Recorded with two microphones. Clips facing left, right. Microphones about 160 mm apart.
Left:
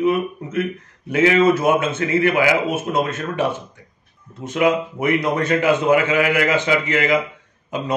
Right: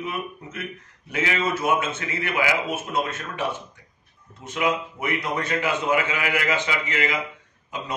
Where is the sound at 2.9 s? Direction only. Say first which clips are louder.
Left 5 dB; 65° left (ahead or behind).